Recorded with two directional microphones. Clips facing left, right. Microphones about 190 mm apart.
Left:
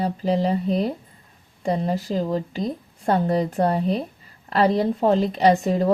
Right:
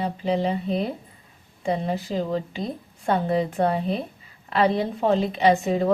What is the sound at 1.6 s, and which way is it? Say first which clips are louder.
A woman's voice: left 2 dB; 40° left (ahead or behind).